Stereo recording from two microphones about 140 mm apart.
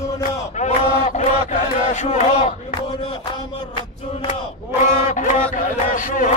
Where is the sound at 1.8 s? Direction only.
55° left (ahead or behind).